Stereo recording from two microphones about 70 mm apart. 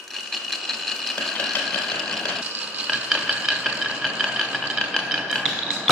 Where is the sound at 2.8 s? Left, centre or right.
Centre.